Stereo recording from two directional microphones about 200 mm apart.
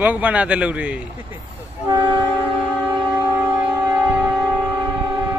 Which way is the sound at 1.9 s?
20° right (ahead or behind).